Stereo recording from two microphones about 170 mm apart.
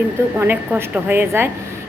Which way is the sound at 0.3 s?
10° right (ahead or behind).